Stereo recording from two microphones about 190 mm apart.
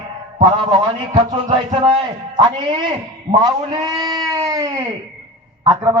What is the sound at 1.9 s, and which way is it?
Speech, 25° right (ahead or behind).